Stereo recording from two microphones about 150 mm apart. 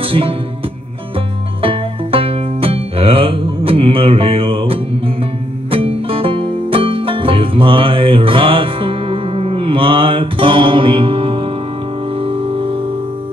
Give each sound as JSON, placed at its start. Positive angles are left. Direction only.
{"t": 0.0, "sound": "music", "side_deg": -35}
{"t": 1.6, "sound": "music", "side_deg": -40}